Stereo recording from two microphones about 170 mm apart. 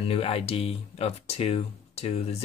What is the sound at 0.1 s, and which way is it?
Speech, 35° left (ahead or behind).